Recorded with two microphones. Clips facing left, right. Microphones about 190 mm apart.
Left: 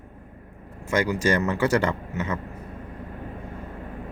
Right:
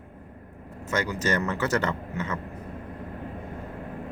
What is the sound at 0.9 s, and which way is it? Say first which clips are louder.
Speech: left 4 dB; 10° left (ahead or behind).